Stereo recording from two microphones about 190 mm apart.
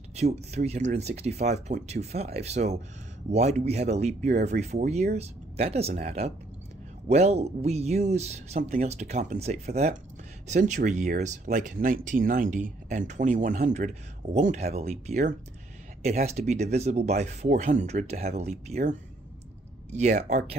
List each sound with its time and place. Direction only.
0.1 s speech: 35° right (ahead or behind)